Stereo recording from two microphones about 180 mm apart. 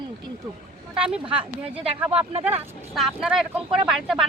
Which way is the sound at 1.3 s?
5° right (ahead or behind).